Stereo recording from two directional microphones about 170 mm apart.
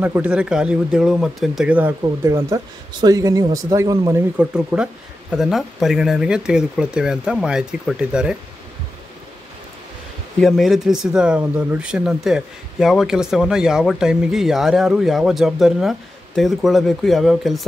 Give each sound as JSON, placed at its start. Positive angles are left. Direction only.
{"t": 0.0, "sound": "speech", "side_deg": -10}
{"t": 4.4, "sound": "speech", "side_deg": -5}
{"t": 10.4, "sound": "speech", "side_deg": 0}